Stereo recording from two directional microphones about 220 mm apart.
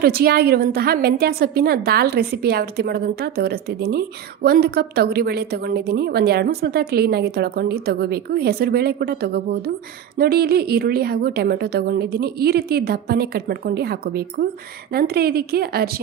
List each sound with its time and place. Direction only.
0.0 s a woman's voice: 45° right (ahead or behind)